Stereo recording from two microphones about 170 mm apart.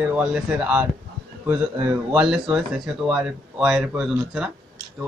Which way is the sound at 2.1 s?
5° right (ahead or behind).